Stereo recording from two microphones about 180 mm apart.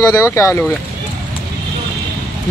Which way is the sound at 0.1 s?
15° left (ahead or behind).